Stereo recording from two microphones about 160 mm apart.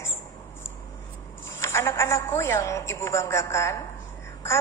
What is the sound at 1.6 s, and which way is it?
A woman's voice, 15° left (ahead or behind).